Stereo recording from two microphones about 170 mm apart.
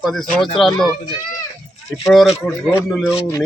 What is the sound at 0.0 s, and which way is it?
Speech, centre (ahead or behind).